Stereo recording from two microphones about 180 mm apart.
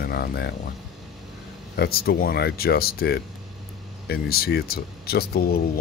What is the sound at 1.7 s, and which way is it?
Speech, 60° left (ahead or behind).